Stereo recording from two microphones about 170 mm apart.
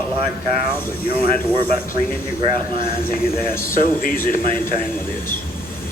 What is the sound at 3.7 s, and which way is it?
Speech, 55° left (ahead or behind).